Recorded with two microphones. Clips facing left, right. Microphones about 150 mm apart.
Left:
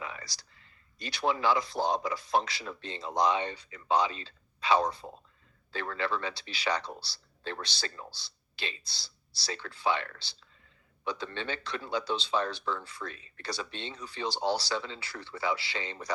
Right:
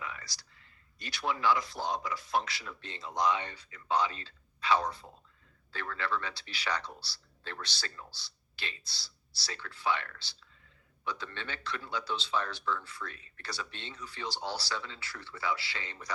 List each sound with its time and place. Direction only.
0.0 s a sound: 25° left (ahead or behind)
0.9 s speech: 25° left (ahead or behind)
5.0 s speech: 35° left (ahead or behind)
5.7 s speech: 20° left (ahead or behind)